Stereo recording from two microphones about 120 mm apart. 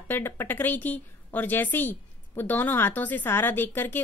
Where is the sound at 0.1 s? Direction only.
20° left (ahead or behind).